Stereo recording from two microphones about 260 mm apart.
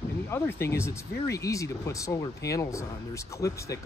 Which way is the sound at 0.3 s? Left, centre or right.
Centre.